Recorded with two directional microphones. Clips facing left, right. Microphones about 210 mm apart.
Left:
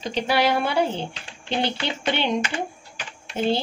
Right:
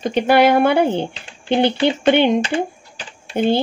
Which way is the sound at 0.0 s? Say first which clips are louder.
Right 8 dB; 55° right (ahead or behind).